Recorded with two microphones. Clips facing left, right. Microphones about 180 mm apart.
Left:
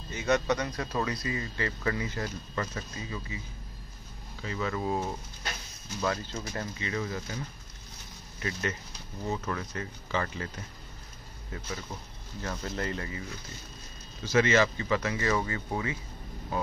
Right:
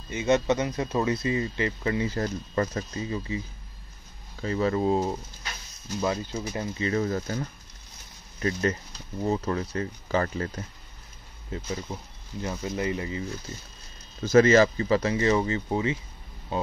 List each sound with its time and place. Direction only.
0.1 s speech: 20° right (ahead or behind)
2.0 s speech: 40° right (ahead or behind)
4.4 s speech: 35° right (ahead or behind)
5.9 s speech: 15° right (ahead or behind)
6.8 s speech: 40° right (ahead or behind)
11.5 s speech: 25° right (ahead or behind)
11.9 s speech: 15° right (ahead or behind)
14.2 s speech: 40° right (ahead or behind); by 16.7 s 25° right (ahead or behind)